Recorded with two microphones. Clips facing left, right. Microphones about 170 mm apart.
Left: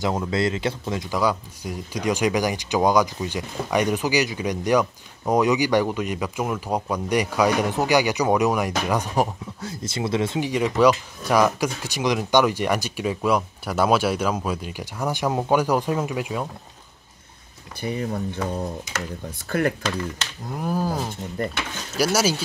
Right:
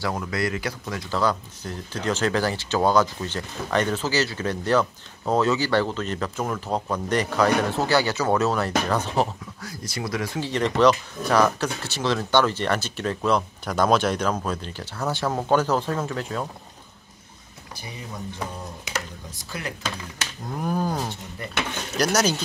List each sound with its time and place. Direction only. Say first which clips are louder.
0.0 s speech: left 4 dB; 25° left (ahead or behind)
9.6 s speech: left 4 dB; 25° left (ahead or behind)
10.5 s speech: even; 10° left (ahead or behind)
17.8 s speech: left 10 dB; 55° left (ahead or behind)
20.5 s a sound: left 1 dB; 5° left (ahead or behind)
21.4 s speech: left 10 dB; 45° left (ahead or behind)
21.9 s speech: left 1 dB; 5° left (ahead or behind)